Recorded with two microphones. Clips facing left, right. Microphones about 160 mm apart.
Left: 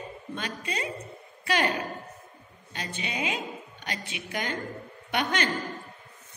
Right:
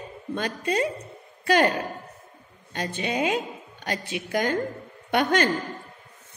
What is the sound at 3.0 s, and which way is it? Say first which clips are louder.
A woman's voice: right 7 dB; 45° right (ahead or behind).